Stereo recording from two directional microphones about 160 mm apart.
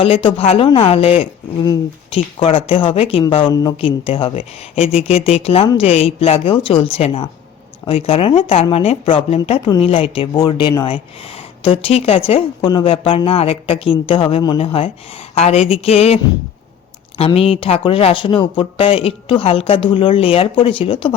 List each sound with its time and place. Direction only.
0.0 s speech: 35° left (ahead or behind)
3.5 s speech: 25° left (ahead or behind)
3.8 s speech: 35° left (ahead or behind)